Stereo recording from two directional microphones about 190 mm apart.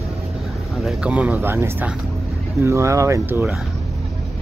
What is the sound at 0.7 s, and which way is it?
Speech, centre (ahead or behind).